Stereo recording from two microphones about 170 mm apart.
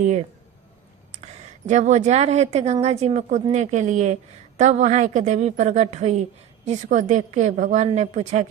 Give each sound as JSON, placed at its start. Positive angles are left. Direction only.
{"t": 1.1, "sound": "a woman's voice", "side_deg": -45}